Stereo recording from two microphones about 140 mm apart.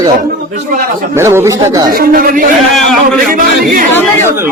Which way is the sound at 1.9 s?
90° right.